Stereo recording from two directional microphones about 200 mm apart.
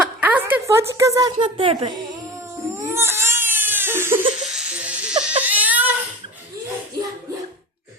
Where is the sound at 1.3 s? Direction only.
25° right (ahead or behind).